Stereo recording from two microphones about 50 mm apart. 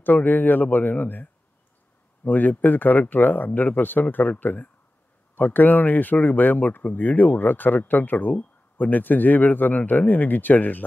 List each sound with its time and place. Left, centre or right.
0.0 s speech: left